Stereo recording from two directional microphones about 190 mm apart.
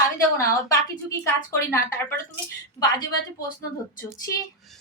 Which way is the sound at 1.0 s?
15° left (ahead or behind).